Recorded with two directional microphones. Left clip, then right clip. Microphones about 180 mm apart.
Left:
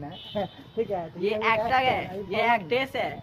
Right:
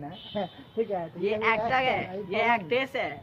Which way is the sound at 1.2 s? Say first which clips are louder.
Left 2 dB; 5° left (ahead or behind).